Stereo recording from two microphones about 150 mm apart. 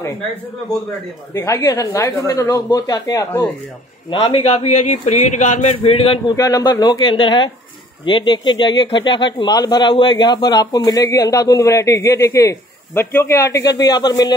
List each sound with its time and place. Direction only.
1.3 s speech: 20° left (ahead or behind)
4.4 s speech: 45° left (ahead or behind)
6.3 s speech: 25° left (ahead or behind)